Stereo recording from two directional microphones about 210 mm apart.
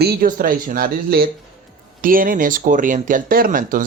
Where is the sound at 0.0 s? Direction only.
45° right (ahead or behind).